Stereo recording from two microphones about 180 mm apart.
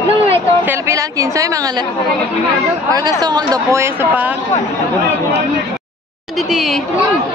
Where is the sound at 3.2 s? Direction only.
20° right (ahead or behind).